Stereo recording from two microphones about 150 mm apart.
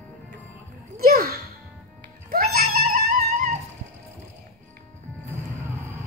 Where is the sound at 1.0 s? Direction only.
90° right.